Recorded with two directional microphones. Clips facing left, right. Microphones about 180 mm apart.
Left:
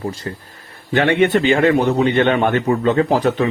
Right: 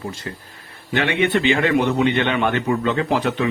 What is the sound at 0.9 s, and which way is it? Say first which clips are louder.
A man's voice: left 5 dB; 50° left (ahead or behind).